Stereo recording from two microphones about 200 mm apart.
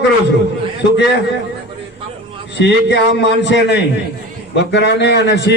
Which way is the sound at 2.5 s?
65° left (ahead or behind).